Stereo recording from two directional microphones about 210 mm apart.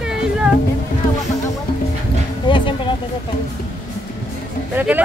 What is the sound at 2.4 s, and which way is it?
Music, 25° left (ahead or behind).